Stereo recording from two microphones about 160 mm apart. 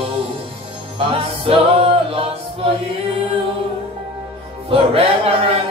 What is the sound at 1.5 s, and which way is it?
A capella, 35° right (ahead or behind).